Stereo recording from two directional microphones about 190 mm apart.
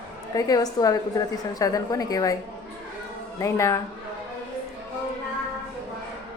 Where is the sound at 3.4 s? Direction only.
15° left (ahead or behind).